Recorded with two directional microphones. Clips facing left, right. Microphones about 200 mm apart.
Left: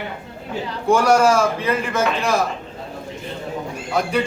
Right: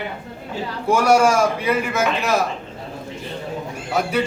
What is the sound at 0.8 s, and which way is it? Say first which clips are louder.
A man's voice: left 1 dB; 10° right (ahead or behind).